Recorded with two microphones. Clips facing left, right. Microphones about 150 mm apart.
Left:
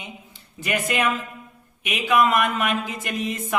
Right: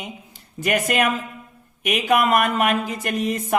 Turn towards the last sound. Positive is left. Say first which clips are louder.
# right 4 dB
turn(degrees=-45)  # may be behind; listen again after turning